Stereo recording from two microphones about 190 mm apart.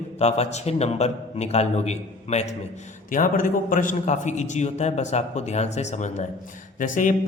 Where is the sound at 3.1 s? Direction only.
45° left (ahead or behind).